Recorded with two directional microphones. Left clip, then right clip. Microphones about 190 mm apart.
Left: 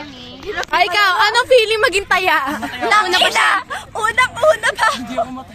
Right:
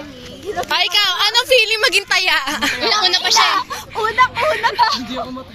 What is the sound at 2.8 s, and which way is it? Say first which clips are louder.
Speech: left 4 dB; 40° left (ahead or behind).